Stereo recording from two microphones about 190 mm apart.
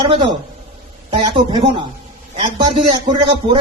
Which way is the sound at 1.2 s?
25° right (ahead or behind).